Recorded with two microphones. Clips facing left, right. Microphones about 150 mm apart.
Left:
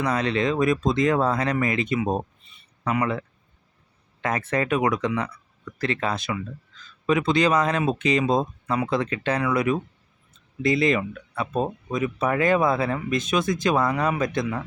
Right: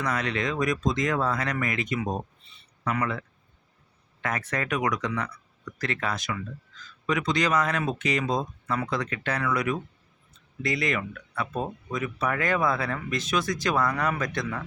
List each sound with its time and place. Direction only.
0.0 s speech: 30° left (ahead or behind)